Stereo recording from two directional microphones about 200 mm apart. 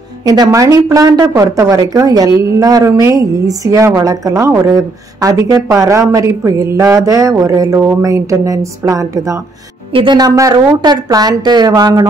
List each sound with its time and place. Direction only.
0.2 s a woman's voice: 20° right (ahead or behind)